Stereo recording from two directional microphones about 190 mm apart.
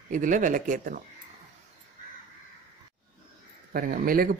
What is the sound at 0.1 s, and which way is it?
Speech, 45° right (ahead or behind).